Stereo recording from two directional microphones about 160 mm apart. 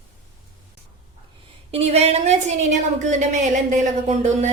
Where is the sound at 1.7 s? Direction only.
40° right (ahead or behind).